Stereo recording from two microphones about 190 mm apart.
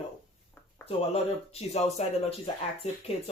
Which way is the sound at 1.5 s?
35° left (ahead or behind).